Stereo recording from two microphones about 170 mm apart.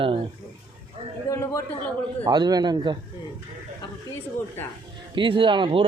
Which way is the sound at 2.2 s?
25° right (ahead or behind).